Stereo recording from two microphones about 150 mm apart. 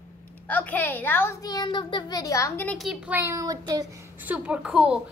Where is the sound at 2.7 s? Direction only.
Centre (ahead or behind); by 3.9 s 25° right (ahead or behind).